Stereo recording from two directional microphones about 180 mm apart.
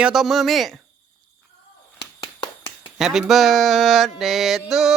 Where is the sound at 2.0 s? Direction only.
25° left (ahead or behind).